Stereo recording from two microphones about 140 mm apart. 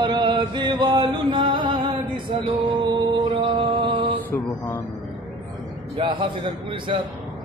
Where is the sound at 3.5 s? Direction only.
35° right (ahead or behind).